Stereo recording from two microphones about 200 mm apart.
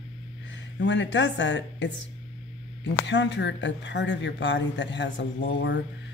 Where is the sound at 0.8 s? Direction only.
65° left (ahead or behind).